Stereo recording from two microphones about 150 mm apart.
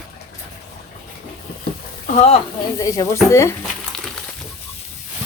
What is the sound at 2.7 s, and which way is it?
Speech, 20° left (ahead or behind).